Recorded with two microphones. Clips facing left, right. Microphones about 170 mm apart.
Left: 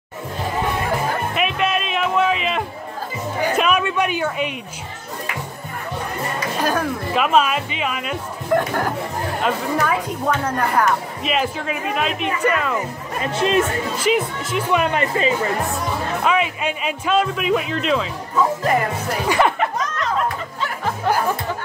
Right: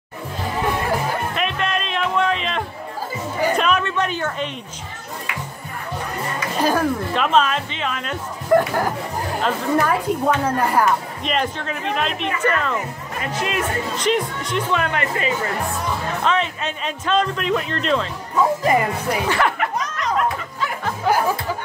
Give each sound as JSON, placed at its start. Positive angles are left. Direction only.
{"t": 1.3, "sound": "music", "side_deg": 5}
{"t": 6.6, "sound": "speech", "side_deg": -10}
{"t": 7.2, "sound": "speech", "side_deg": 10}
{"t": 11.2, "sound": "speech", "side_deg": 5}
{"t": 13.2, "sound": "speech", "side_deg": 25}
{"t": 13.9, "sound": "speech", "side_deg": 5}
{"t": 14.8, "sound": "speech", "side_deg": 20}
{"t": 16.3, "sound": "speech", "side_deg": 10}
{"t": 19.2, "sound": "speech", "side_deg": 20}
{"t": 20.8, "sound": "music", "side_deg": -5}